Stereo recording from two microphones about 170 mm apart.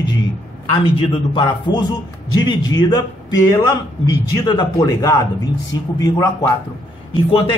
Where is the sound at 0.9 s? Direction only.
30° left (ahead or behind).